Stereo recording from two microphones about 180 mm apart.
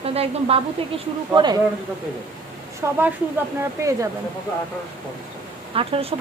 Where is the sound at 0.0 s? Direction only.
35° right (ahead or behind).